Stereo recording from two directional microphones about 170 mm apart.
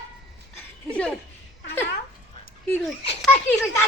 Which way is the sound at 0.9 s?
5° left (ahead or behind).